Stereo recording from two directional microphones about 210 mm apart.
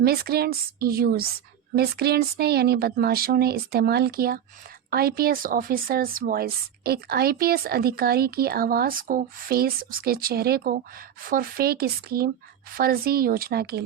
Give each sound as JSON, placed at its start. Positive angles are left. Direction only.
{"t": 0.0, "sound": "speech", "side_deg": -50}